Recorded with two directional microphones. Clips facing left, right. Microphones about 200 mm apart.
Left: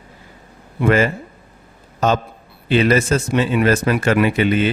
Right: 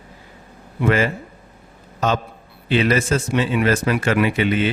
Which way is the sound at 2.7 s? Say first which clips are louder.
Left 3 dB; 45° left (ahead or behind).